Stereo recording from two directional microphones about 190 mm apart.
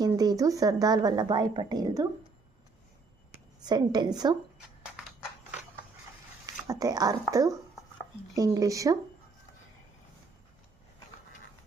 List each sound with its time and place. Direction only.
0.0 s a woman's voice: 20° right (ahead or behind)
3.6 s a woman's voice: 20° right (ahead or behind)
6.7 s a woman's voice: 20° right (ahead or behind)